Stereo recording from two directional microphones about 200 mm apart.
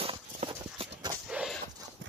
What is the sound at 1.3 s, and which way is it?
Horse, 5° right (ahead or behind).